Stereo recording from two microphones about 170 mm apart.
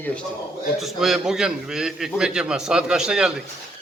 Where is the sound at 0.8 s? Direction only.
Centre (ahead or behind).